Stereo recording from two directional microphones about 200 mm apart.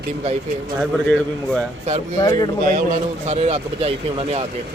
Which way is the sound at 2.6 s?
40° right (ahead or behind).